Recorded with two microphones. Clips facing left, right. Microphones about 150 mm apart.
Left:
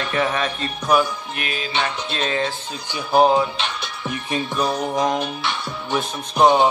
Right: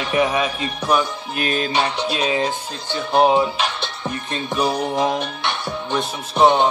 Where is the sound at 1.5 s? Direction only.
40° right (ahead or behind).